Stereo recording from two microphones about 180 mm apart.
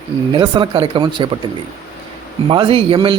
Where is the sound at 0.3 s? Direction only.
25° right (ahead or behind).